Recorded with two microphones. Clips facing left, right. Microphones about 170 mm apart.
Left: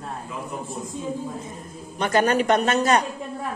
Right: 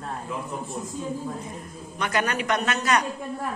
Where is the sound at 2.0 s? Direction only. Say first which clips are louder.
Left 6 dB; 30° left (ahead or behind).